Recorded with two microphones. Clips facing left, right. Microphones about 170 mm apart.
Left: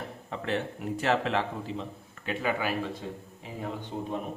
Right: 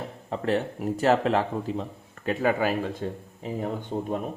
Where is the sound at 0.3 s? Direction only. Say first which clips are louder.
Right 6 dB; 40° right (ahead or behind).